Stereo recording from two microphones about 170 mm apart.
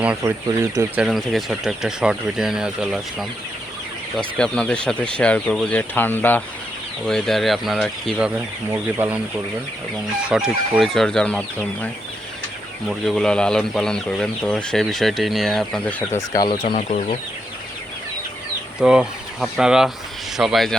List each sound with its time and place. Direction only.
0.2 s speech: 20° right (ahead or behind)
0.9 s speech: centre (ahead or behind)
8.7 s speech: 10° right (ahead or behind)
10.2 s speech: centre (ahead or behind)
13.1 s speech: 5° left (ahead or behind)
16.7 s speech: 45° left (ahead or behind)
18.8 s speech: 5° right (ahead or behind)